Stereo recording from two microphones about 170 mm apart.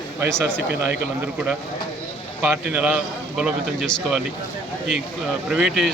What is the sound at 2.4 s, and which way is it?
A man's voice, 10° right (ahead or behind).